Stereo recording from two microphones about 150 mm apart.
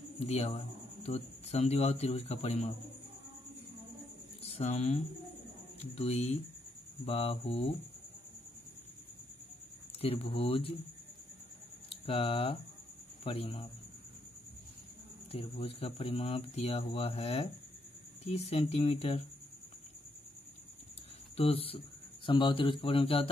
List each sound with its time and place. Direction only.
0.3 s speech: 40° left (ahead or behind)
4.4 s speech: 45° left (ahead or behind)
9.9 s speech: 40° left (ahead or behind)
11.9 s speech: 40° left (ahead or behind)
15.3 s speech: 40° left (ahead or behind)
21.4 s speech: 40° left (ahead or behind)